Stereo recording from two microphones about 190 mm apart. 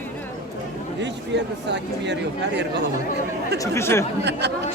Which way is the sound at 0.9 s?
65° right (ahead or behind).